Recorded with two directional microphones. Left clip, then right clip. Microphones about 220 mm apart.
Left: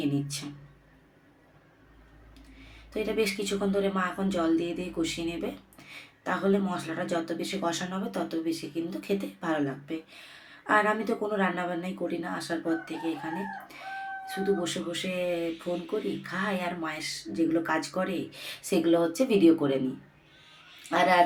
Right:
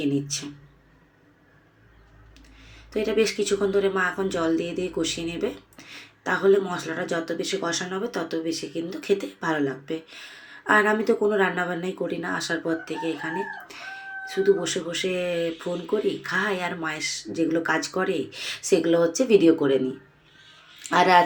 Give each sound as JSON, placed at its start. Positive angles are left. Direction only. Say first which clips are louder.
{"t": 0.0, "sound": "speech", "louder": "right 5 dB", "side_deg": -10}
{"t": 2.9, "sound": "speech", "louder": "right 6 dB", "side_deg": -10}
{"t": 14.3, "sound": "speech", "louder": "right 8 dB", "side_deg": -15}
{"t": 20.9, "sound": "speech", "louder": "right 5 dB", "side_deg": -20}